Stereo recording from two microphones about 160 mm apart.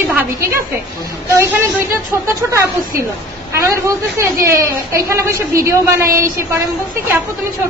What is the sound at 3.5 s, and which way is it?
A woman's voice, 20° right (ahead or behind).